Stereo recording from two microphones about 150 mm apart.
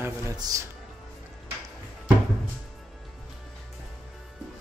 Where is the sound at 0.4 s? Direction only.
25° right (ahead or behind).